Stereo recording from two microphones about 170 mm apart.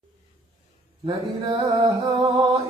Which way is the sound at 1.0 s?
30° right (ahead or behind).